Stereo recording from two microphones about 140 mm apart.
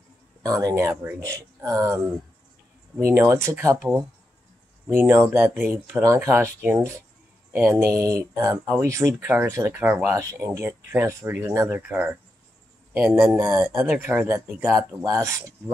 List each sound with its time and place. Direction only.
0.4 s speech: 25° right (ahead or behind)
3.1 s speech: 15° right (ahead or behind)
5.0 s speech: 15° right (ahead or behind)
10.1 s speech: 25° right (ahead or behind)
11.9 s speech: 10° right (ahead or behind)